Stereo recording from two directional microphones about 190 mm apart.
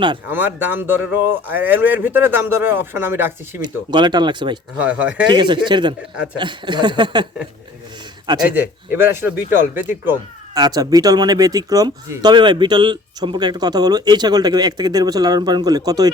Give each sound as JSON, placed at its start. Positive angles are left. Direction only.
{"t": 0.3, "sound": "speech", "side_deg": -10}
{"t": 3.6, "sound": "speech", "side_deg": -25}
{"t": 4.8, "sound": "speech", "side_deg": -5}
{"t": 5.3, "sound": "speech", "side_deg": -25}
{"t": 8.4, "sound": "speech", "side_deg": -10}